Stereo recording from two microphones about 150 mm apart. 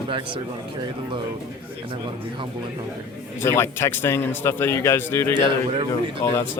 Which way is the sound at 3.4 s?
15° left (ahead or behind).